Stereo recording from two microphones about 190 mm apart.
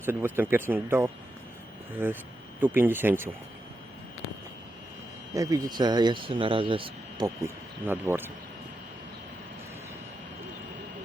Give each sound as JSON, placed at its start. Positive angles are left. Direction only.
{"t": 0.0, "sound": "speech", "side_deg": -10}
{"t": 5.3, "sound": "speech", "side_deg": -20}